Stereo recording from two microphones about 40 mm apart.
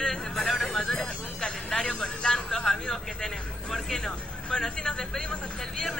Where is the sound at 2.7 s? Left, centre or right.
Centre.